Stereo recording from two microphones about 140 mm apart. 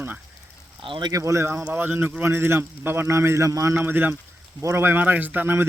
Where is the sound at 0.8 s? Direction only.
35° right (ahead or behind).